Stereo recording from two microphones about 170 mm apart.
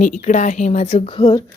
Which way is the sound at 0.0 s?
50° left (ahead or behind).